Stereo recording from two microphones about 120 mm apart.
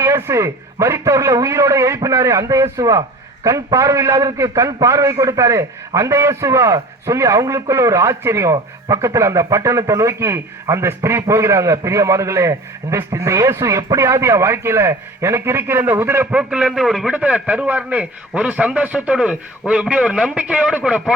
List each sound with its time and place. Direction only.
0.0 s a man's voice: 25° right (ahead or behind)